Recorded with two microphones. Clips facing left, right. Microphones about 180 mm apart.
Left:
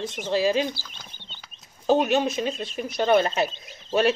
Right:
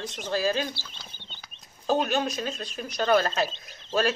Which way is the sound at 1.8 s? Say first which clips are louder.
Left 5 dB; 20° left (ahead or behind).